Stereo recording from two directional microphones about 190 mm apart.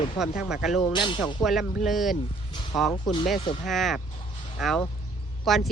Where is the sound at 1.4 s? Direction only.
Centre (ahead or behind).